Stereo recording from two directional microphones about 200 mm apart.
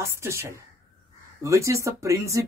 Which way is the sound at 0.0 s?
15° right (ahead or behind).